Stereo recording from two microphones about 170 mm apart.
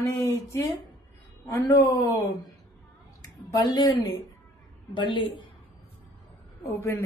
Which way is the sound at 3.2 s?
20° left (ahead or behind).